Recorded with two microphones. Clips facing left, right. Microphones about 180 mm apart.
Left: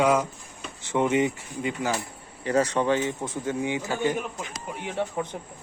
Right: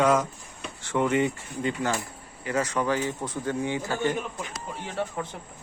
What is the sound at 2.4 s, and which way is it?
A man's voice, 35° left (ahead or behind).